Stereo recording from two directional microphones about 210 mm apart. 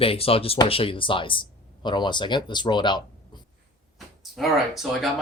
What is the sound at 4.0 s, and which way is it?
Speech, centre (ahead or behind).